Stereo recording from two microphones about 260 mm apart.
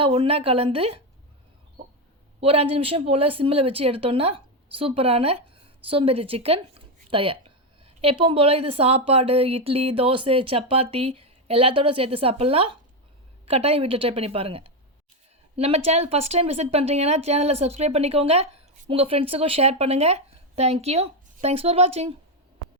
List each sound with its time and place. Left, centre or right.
0.0 s speech: right
2.4 s speech: right
7.1 s a sound: centre
8.2 s speech: right